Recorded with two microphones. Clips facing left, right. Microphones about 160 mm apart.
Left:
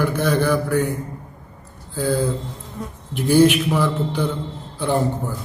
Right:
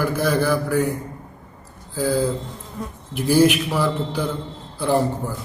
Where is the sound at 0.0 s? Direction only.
5° right (ahead or behind).